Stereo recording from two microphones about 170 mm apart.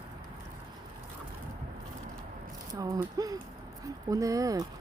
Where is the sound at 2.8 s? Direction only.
20° right (ahead or behind).